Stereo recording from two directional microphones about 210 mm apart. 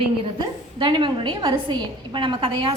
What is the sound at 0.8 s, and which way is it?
A woman's voice, 25° right (ahead or behind).